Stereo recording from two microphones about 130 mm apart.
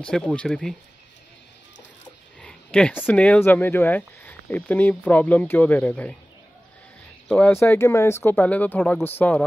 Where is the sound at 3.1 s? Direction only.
10° left (ahead or behind).